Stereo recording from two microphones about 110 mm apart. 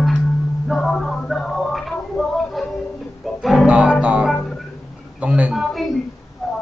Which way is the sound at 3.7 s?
10° right (ahead or behind).